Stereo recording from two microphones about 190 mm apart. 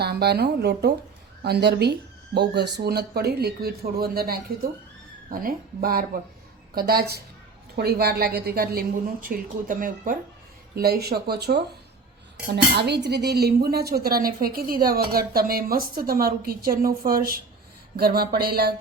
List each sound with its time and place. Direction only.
0.0 s speech: 60° right (ahead or behind)
10.8 s speech: 55° right (ahead or behind)
12.7 s speech: 60° right (ahead or behind)